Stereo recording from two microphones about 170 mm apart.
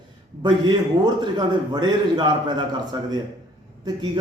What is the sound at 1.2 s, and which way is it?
A man's voice, 25° right (ahead or behind).